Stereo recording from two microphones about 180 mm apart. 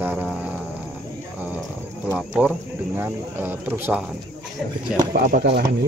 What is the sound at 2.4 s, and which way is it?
Speech, 5° right (ahead or behind).